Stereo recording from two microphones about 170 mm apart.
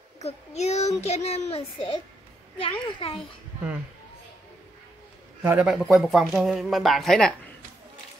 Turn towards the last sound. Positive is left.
turn(degrees=0)  # may be behind; listen again after turning